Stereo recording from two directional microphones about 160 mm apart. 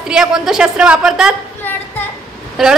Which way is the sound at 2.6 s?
Centre (ahead or behind).